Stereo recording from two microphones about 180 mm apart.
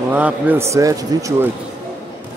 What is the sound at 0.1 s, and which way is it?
A man's voice, 10° right (ahead or behind).